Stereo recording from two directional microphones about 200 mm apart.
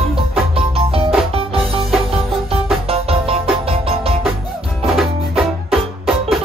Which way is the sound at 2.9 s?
30° right (ahead or behind).